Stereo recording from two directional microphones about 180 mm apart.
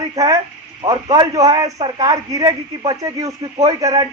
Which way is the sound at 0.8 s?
25° right (ahead or behind).